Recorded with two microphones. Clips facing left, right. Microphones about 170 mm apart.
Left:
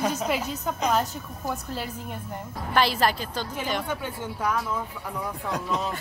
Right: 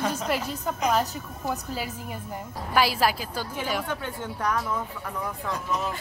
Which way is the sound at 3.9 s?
10° left (ahead or behind).